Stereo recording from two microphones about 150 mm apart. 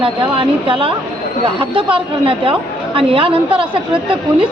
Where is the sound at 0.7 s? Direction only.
35° right (ahead or behind).